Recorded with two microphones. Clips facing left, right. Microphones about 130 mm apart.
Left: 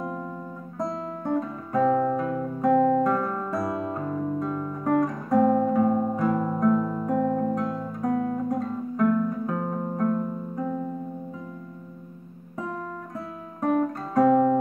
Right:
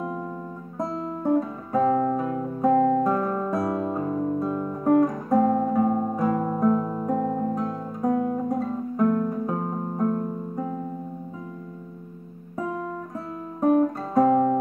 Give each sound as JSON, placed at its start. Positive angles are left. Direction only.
{"t": 1.2, "sound": "guitar", "side_deg": -5}
{"t": 2.8, "sound": "guitar", "side_deg": -5}
{"t": 5.7, "sound": "music", "side_deg": -15}
{"t": 8.0, "sound": "guitar", "side_deg": -20}
{"t": 9.2, "sound": "music", "side_deg": -20}
{"t": 14.1, "sound": "guitar", "side_deg": -20}